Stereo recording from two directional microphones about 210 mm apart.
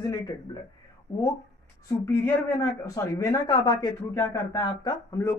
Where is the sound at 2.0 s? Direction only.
10° left (ahead or behind).